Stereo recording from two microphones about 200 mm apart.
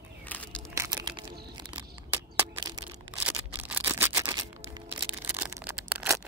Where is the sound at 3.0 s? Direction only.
10° right (ahead or behind).